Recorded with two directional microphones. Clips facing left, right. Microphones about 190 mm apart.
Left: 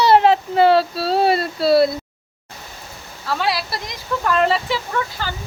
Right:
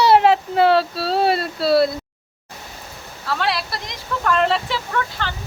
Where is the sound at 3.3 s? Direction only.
5° left (ahead or behind).